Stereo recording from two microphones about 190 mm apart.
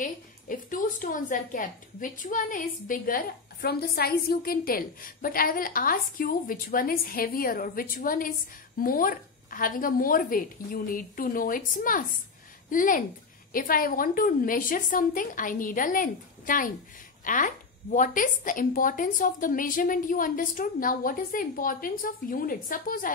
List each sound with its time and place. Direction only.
0.0 s a woman's voice: 45° left (ahead or behind)